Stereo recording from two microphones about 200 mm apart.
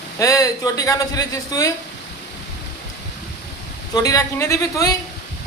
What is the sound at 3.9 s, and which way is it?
Speech, 15° left (ahead or behind).